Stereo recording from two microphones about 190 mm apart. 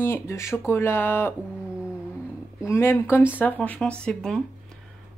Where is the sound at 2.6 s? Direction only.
10° left (ahead or behind).